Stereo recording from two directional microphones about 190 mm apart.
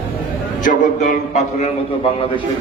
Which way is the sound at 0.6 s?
40° left (ahead or behind).